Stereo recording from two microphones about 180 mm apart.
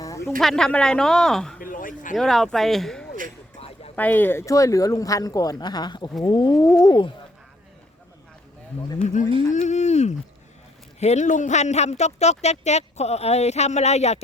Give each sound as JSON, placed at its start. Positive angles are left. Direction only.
{"t": 0.3, "sound": "speech", "side_deg": 5}
{"t": 1.5, "sound": "speech", "side_deg": 50}
{"t": 2.1, "sound": "speech", "side_deg": 0}
{"t": 3.6, "sound": "a sound", "side_deg": 35}
{"t": 3.9, "sound": "speech", "side_deg": 10}
{"t": 9.5, "sound": "speech", "side_deg": 40}